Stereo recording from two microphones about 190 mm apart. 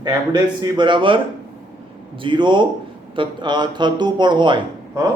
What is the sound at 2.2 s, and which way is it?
A man's voice, 25° right (ahead or behind).